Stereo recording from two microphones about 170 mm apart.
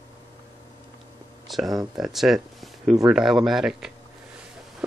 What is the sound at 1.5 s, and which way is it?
Speech, centre (ahead or behind).